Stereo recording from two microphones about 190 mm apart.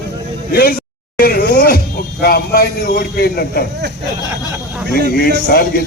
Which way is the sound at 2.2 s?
55° left (ahead or behind).